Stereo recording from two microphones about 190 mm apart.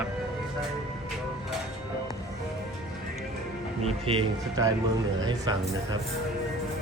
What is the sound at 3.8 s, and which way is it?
Speech, 30° right (ahead or behind).